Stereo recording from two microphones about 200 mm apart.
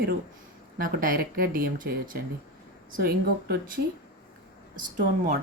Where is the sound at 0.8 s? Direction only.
45° right (ahead or behind).